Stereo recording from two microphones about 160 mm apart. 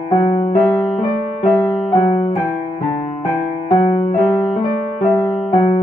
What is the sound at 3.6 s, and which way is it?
Music, 40° left (ahead or behind).